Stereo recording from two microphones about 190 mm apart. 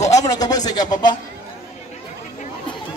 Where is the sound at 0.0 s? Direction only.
20° left (ahead or behind).